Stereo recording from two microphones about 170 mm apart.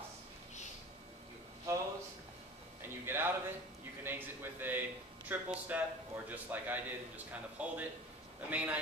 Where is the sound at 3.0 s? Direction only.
15° right (ahead or behind).